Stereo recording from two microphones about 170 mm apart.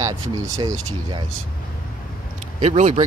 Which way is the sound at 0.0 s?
20° right (ahead or behind).